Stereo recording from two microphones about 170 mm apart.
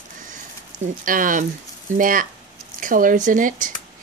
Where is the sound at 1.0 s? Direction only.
50° right (ahead or behind).